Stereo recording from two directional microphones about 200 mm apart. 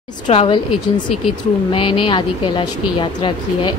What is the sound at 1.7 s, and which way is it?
Speech, 25° left (ahead or behind).